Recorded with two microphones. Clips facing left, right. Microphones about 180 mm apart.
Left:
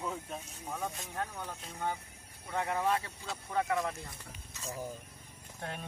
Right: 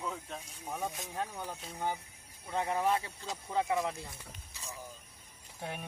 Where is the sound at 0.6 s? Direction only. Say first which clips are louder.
Right 1 dB; 15° right (ahead or behind).